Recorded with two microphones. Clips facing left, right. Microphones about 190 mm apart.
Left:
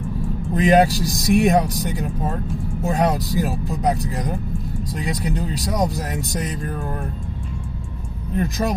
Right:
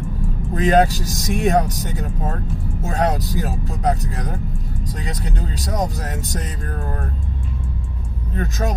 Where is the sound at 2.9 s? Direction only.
10° left (ahead or behind).